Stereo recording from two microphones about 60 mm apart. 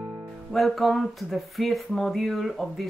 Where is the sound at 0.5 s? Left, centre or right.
Centre.